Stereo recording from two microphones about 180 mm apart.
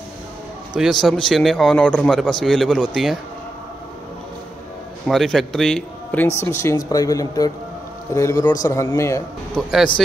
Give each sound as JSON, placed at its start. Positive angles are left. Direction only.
{"t": 0.7, "sound": "a man's voice", "side_deg": 0}
{"t": 5.0, "sound": "a man's voice", "side_deg": 0}
{"t": 6.2, "sound": "speech", "side_deg": 15}
{"t": 9.6, "sound": "a man's voice", "side_deg": 0}